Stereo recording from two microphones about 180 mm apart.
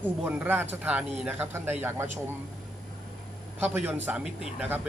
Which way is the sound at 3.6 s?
10° right (ahead or behind).